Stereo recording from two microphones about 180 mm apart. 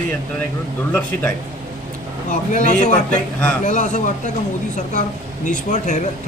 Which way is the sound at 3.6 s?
40° left (ahead or behind).